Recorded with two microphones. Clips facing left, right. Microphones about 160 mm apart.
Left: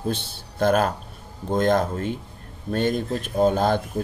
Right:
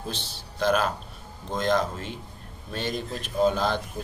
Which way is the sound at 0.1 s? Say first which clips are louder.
Left 8 dB; 55° left (ahead or behind).